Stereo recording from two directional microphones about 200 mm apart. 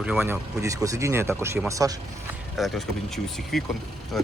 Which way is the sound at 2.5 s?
Centre (ahead or behind).